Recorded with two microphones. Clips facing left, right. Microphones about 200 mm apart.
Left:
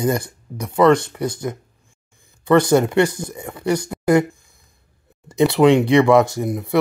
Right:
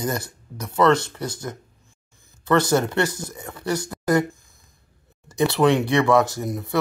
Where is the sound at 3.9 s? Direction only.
10° left (ahead or behind).